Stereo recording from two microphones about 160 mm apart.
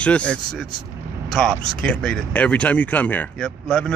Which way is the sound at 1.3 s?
5° left (ahead or behind).